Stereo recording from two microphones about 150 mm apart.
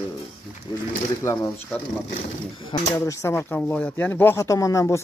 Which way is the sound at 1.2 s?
15° left (ahead or behind).